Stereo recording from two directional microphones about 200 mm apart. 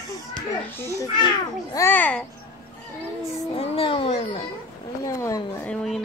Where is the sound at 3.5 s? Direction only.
25° left (ahead or behind).